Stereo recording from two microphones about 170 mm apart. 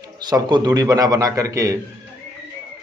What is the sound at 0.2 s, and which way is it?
Speech, 25° right (ahead or behind).